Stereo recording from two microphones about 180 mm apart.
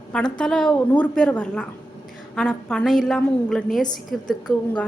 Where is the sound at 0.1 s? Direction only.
5° left (ahead or behind).